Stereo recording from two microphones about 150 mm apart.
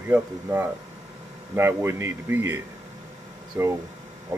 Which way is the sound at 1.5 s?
15° right (ahead or behind).